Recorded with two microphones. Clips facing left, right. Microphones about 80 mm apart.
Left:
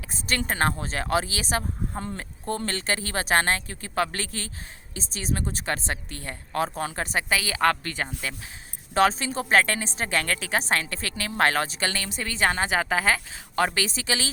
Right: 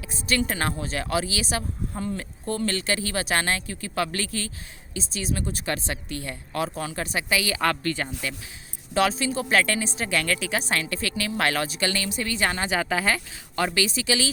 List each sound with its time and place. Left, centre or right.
0.1 s a woman's voice: left
9.0 s a woman's voice: left
13.7 s a woman's voice: left